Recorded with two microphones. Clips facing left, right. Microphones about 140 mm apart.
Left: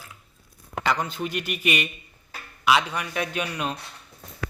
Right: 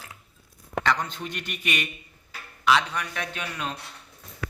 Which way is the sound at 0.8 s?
10° left (ahead or behind).